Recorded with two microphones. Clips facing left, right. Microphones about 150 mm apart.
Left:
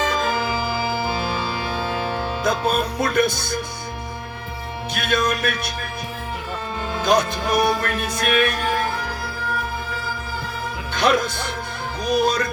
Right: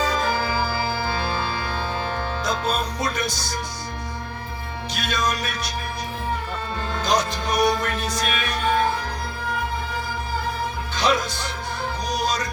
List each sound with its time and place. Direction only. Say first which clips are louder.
0.3 s organ: left 1 dB; 20° left (ahead or behind)
2.4 s music: left 5 dB; 55° left (ahead or behind)
4.9 s music: left 4 dB; 55° left (ahead or behind)
7.0 s music: left 4 dB; 55° left (ahead or behind)
10.9 s speech: left 4 dB; 55° left (ahead or behind)
12.0 s music: left 7 dB; 55° left (ahead or behind)